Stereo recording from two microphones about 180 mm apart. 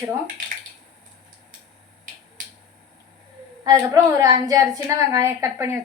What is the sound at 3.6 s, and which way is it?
A woman's voice, 20° right (ahead or behind).